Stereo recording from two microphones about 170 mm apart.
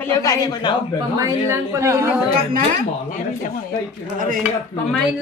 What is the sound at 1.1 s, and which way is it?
A woman's voice, 20° right (ahead or behind).